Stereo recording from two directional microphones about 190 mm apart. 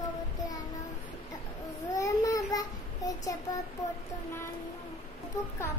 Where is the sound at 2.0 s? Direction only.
15° left (ahead or behind).